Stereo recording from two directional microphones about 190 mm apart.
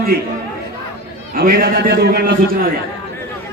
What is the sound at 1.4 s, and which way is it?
Speech, 55° right (ahead or behind).